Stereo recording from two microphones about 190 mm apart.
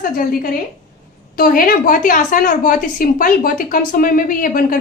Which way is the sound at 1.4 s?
50° left (ahead or behind).